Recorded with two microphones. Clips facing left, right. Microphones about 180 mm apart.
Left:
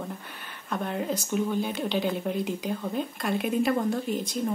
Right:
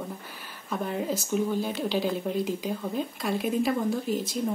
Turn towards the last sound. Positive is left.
turn(degrees=-5)  # may be behind; listen again after turning